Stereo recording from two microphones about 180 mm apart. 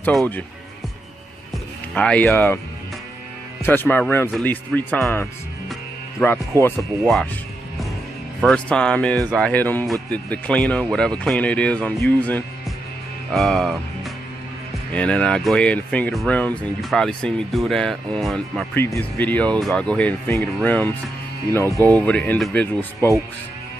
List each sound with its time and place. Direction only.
0.0 s speech: 5° left (ahead or behind)
2.0 s speech: 5° left (ahead or behind)
3.6 s speech: 10° left (ahead or behind)
8.4 s speech: 5° left (ahead or behind)
14.9 s speech: 5° left (ahead or behind)